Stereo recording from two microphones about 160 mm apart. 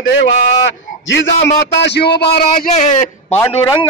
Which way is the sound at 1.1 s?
90° left.